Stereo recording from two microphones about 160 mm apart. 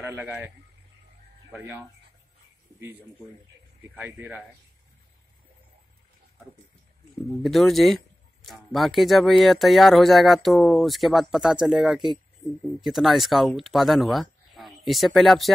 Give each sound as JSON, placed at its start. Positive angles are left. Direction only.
{"t": 0.0, "sound": "a man's voice", "side_deg": -10}
{"t": 2.8, "sound": "speech", "side_deg": -10}
{"t": 7.4, "sound": "speech", "side_deg": 0}